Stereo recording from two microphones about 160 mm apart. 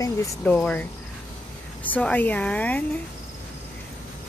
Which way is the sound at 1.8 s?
10° left (ahead or behind).